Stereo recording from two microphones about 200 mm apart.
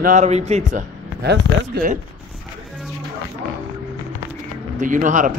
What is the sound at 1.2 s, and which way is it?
Speech, 50° right (ahead or behind).